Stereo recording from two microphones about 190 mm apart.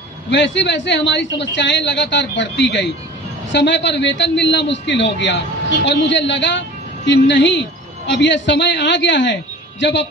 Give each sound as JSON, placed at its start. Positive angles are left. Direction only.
{"t": 0.3, "sound": "a man's voice", "side_deg": 70}